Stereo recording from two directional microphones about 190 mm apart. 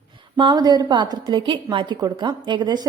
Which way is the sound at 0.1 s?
25° right (ahead or behind).